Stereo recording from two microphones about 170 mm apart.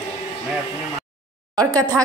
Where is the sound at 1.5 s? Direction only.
20° right (ahead or behind).